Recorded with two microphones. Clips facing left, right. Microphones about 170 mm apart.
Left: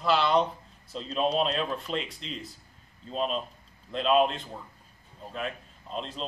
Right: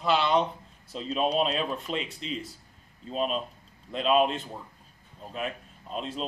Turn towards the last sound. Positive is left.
turn(degrees=-5)  # may be behind; listen again after turning